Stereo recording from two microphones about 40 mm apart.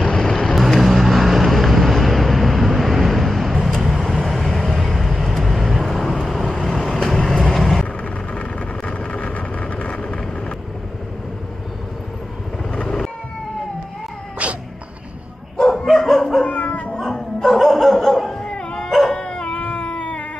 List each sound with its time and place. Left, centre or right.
0.0 s vehicle: centre
0.6 s vehicle: centre
8.4 s vehicle: left
14.4 s cat: right
15.6 s dog: centre
16.4 s music: left
17.0 s a sound: centre
18.4 s dog: left
18.9 s dog: centre
19.5 s cat: left